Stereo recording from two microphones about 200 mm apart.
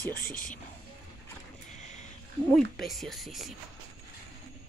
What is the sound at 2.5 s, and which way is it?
Speech, centre (ahead or behind).